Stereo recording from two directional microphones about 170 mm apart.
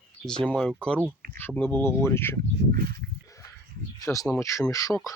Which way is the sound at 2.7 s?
65° right (ahead or behind).